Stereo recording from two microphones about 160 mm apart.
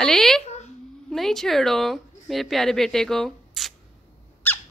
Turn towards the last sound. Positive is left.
turn(degrees=10)  # may be behind; listen again after turning